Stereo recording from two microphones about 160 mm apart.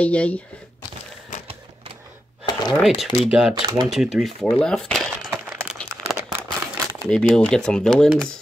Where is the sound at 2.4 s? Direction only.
25° left (ahead or behind).